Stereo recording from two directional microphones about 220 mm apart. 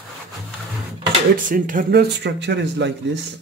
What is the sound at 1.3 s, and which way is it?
Speech, 40° right (ahead or behind).